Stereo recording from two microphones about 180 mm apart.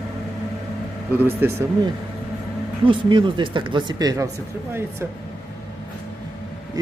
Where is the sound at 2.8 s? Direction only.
25° right (ahead or behind).